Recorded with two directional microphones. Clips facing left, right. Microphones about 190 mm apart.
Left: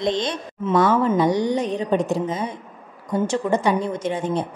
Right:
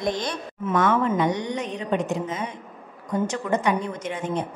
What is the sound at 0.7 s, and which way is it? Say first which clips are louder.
Speech: left 4 dB; 35° left (ahead or behind).